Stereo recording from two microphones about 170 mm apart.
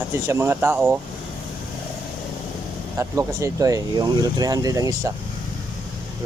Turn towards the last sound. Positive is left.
turn(degrees=-20)  # may be behind; listen again after turning